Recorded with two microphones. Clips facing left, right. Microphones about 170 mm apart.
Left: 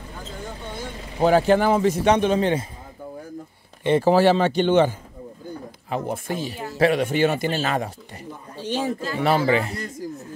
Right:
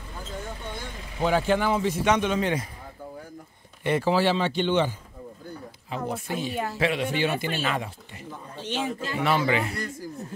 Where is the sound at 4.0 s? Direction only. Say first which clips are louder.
Left 7 dB; 45° left (ahead or behind).